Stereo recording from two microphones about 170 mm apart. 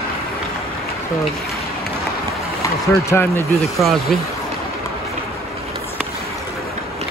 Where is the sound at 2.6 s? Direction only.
15° left (ahead or behind).